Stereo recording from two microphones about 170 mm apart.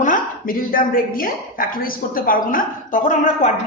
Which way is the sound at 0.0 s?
55° left (ahead or behind).